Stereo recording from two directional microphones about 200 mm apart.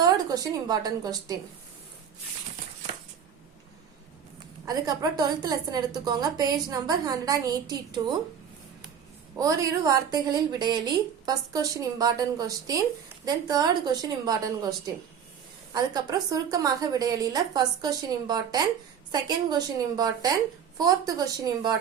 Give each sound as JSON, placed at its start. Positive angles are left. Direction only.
{"t": 0.0, "sound": "a woman's voice", "side_deg": -20}
{"t": 4.6, "sound": "a woman's voice", "side_deg": -20}
{"t": 9.4, "sound": "a woman's voice", "side_deg": -15}
{"t": 15.7, "sound": "a woman's voice", "side_deg": -20}